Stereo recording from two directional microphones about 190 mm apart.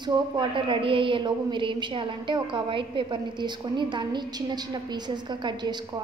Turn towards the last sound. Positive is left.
turn(degrees=-20)  # may be behind; listen again after turning